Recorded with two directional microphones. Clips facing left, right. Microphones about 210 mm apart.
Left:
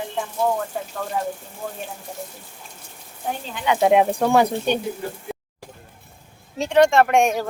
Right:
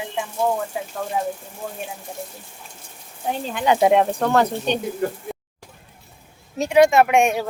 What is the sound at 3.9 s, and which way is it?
Speech, 10° left (ahead or behind).